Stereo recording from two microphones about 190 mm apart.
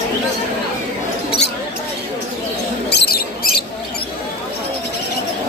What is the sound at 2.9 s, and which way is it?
Mouse, 55° left (ahead or behind).